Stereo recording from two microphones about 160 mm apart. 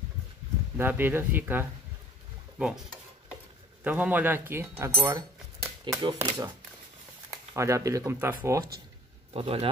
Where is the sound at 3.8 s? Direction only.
10° right (ahead or behind).